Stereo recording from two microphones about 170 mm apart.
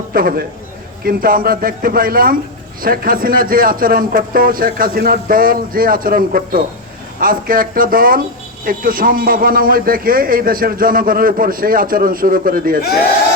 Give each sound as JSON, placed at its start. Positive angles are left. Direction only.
{"t": 0.1, "sound": "a man's voice", "side_deg": -60}